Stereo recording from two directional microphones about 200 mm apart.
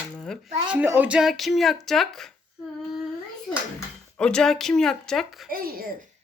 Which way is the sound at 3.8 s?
5° left (ahead or behind).